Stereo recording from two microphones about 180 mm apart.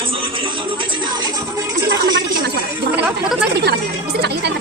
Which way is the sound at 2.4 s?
65° right (ahead or behind).